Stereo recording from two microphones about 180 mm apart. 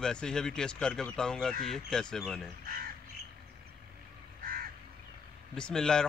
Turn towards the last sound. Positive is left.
turn(degrees=5)  # may be behind; listen again after turning